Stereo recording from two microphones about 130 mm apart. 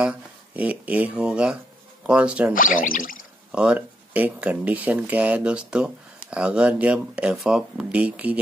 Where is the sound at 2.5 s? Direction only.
90° left.